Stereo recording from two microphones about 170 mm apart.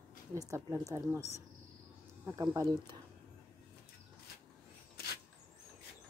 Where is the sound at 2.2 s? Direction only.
20° right (ahead or behind).